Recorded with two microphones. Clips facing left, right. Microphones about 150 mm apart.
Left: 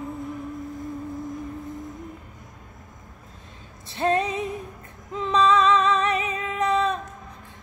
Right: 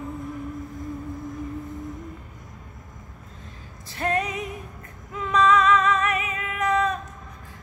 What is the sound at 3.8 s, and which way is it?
Female singing, 25° left (ahead or behind).